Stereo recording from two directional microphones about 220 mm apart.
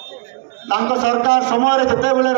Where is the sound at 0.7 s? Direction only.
55° right (ahead or behind).